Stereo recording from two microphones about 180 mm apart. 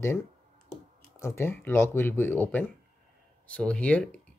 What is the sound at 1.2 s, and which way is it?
Speech, 15° left (ahead or behind).